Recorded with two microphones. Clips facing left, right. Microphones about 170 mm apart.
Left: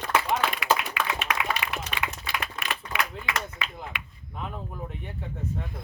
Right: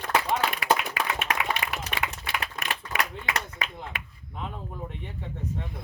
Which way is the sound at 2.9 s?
45° right (ahead or behind).